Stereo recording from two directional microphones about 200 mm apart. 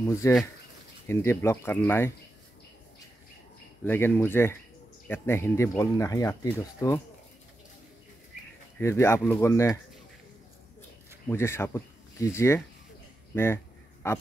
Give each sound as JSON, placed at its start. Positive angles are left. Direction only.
{"t": 0.0, "sound": "speech", "side_deg": 15}
{"t": 3.8, "sound": "speech", "side_deg": 10}
{"t": 8.7, "sound": "speech", "side_deg": 15}
{"t": 11.2, "sound": "speech", "side_deg": 15}